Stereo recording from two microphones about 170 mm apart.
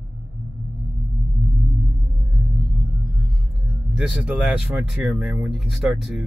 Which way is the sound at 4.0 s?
5° right (ahead or behind).